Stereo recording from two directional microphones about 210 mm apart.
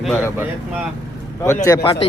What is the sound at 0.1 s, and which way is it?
Speech, 10° left (ahead or behind).